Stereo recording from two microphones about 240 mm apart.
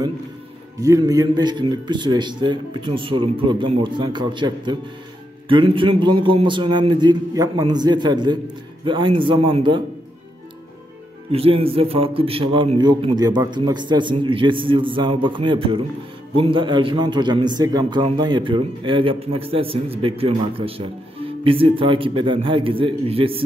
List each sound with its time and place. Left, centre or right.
0.7 s a man's voice: centre
11.3 s a man's voice: right